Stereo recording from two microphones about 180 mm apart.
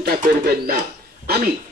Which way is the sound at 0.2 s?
55° right (ahead or behind).